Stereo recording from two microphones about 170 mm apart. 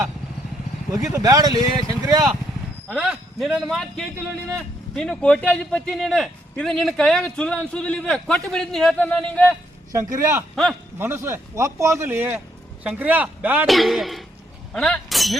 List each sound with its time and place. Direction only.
1.1 s speech: 20° right (ahead or behind)
2.9 s speech: centre (ahead or behind)
9.9 s speech: 15° right (ahead or behind)
10.5 s speech: centre (ahead or behind)
10.9 s speech: 15° right (ahead or behind)